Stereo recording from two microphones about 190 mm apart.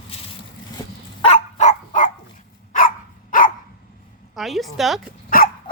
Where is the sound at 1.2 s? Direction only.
35° left (ahead or behind).